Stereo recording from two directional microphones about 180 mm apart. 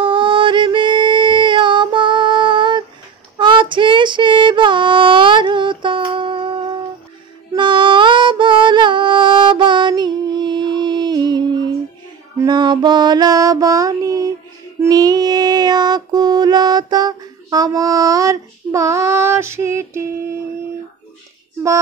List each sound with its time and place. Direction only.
0.0 s music: 30° right (ahead or behind)
3.3 s female singing: 25° right (ahead or behind)
7.5 s music: 25° right (ahead or behind)
12.4 s female singing: 25° right (ahead or behind)